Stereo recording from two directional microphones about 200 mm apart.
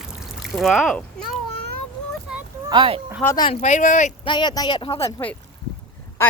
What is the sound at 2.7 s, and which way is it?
Speech, 25° right (ahead or behind).